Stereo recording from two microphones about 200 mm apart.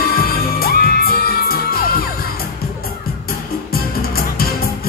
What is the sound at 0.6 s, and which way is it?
Music, 50° left (ahead or behind).